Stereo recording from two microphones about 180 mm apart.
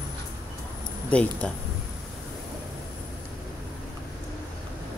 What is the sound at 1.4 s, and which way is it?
Speech, 5° left (ahead or behind).